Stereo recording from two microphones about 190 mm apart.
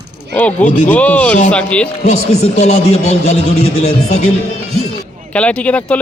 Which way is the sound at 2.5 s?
35° left (ahead or behind).